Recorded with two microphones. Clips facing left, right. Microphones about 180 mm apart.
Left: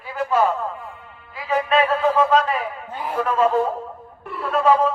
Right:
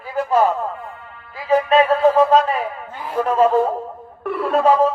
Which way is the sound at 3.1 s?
40° right (ahead or behind).